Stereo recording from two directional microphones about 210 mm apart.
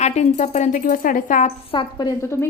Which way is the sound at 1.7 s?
20° left (ahead or behind).